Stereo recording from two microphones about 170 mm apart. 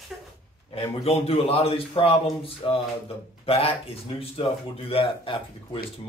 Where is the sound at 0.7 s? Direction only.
35° left (ahead or behind).